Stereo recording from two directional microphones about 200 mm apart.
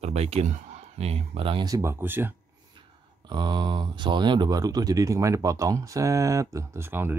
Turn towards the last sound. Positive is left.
turn(degrees=-10)  # may be behind; listen again after turning